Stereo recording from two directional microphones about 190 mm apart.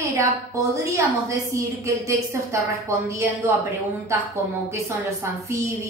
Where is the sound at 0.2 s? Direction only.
15° right (ahead or behind).